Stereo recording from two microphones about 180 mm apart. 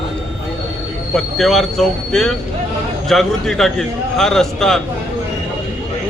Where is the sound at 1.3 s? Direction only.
Centre (ahead or behind).